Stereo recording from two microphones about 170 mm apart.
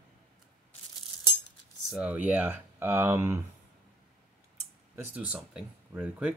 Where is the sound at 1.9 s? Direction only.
5° right (ahead or behind).